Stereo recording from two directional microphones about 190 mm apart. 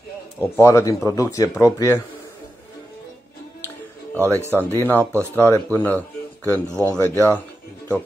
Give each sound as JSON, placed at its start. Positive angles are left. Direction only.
{"t": 0.4, "sound": "speech", "side_deg": 15}
{"t": 4.1, "sound": "music", "side_deg": 10}
{"t": 4.5, "sound": "speech", "side_deg": 10}
{"t": 6.7, "sound": "speech", "side_deg": -15}
{"t": 7.0, "sound": "speech", "side_deg": 10}